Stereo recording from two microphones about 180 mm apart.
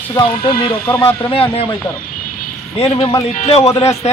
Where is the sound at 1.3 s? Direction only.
30° left (ahead or behind).